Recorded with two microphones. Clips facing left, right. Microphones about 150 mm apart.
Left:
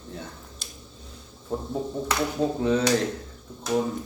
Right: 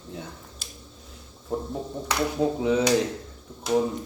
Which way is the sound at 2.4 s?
10° right (ahead or behind).